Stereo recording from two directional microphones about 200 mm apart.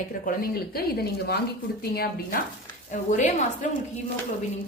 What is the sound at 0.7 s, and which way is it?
A woman's voice, 50° left (ahead or behind).